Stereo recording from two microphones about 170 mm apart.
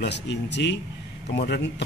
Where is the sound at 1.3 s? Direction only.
70° left (ahead or behind).